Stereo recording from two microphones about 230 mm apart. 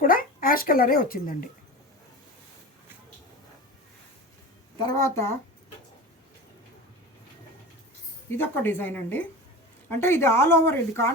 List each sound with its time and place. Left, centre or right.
0.0 s speech: left
4.8 s speech: centre
8.3 s speech: centre